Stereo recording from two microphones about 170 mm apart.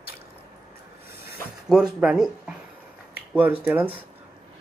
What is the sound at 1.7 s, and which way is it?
Speech, 5° right (ahead or behind).